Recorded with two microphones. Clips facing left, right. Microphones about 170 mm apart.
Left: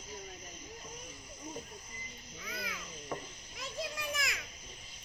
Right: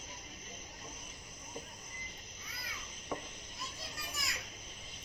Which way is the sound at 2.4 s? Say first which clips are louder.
Left 11 dB; 90° left.